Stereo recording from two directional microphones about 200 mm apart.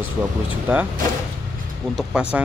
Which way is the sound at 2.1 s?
5° right (ahead or behind).